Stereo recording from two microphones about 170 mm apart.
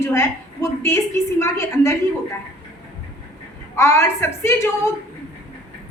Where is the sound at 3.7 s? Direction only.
15° left (ahead or behind).